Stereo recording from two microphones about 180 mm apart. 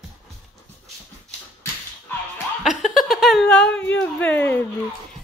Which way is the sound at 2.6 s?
Centre (ahead or behind).